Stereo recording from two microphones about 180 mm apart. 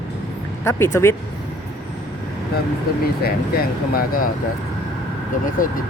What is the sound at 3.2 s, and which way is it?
Speech, 55° left (ahead or behind).